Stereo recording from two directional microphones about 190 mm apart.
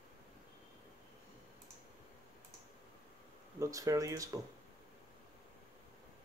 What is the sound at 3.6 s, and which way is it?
Speech, 15° right (ahead or behind).